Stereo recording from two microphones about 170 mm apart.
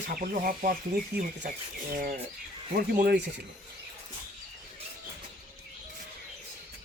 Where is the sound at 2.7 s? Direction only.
60° right (ahead or behind).